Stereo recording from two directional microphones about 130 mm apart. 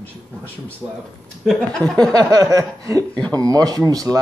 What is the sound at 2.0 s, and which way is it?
Speech, 30° right (ahead or behind).